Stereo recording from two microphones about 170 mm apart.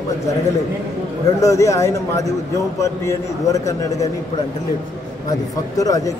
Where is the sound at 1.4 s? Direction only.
20° left (ahead or behind).